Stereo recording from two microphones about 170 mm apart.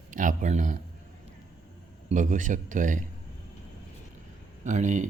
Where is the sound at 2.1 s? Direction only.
50° right (ahead or behind).